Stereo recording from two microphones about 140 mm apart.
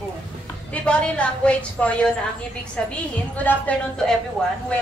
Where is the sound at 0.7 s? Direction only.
10° left (ahead or behind).